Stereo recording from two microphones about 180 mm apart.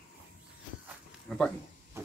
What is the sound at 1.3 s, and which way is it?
Speech, 5° left (ahead or behind).